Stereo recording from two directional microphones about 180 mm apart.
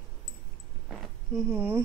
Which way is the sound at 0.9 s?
5° right (ahead or behind).